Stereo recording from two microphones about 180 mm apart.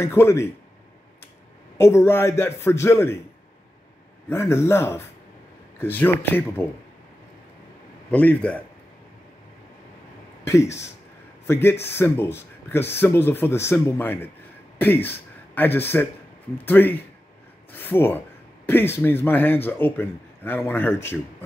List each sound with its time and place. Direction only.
0.0 s a man's voice: 15° left (ahead or behind)
1.8 s a man's voice: 15° left (ahead or behind)
4.3 s a man's voice: 15° left (ahead or behind)
8.1 s a man's voice: 10° left (ahead or behind)
10.4 s a man's voice: 15° left (ahead or behind)